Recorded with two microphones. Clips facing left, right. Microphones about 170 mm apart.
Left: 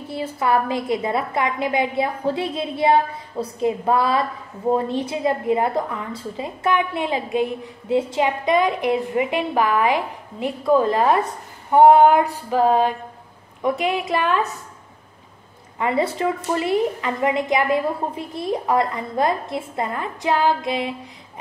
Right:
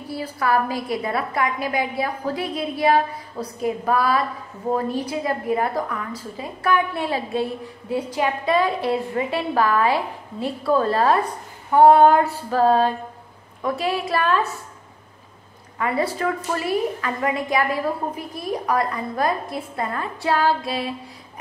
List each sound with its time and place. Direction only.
0.1 s a woman's voice: 25° left (ahead or behind)
11.7 s female singing: 20° left (ahead or behind)
13.6 s a woman's voice: 20° left (ahead or behind)
15.8 s a woman's voice: 25° left (ahead or behind)